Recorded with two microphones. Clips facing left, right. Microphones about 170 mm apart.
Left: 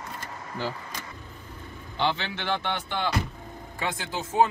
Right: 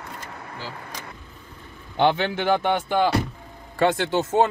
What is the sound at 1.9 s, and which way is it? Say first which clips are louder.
Speech: right 8 dB; 55° right (ahead or behind).